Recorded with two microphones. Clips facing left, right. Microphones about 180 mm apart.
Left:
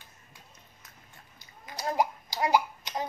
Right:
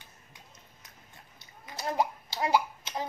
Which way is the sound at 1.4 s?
25° right (ahead or behind).